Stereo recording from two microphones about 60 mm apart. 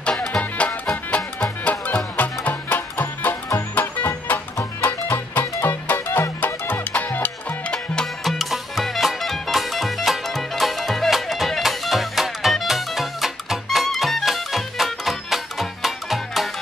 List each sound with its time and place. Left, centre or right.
0.0 s music: centre; by 3.3 s left
3.8 s music: left
4.8 s music: left
6.4 s music: left
7.7 s music: centre
8.2 s music: centre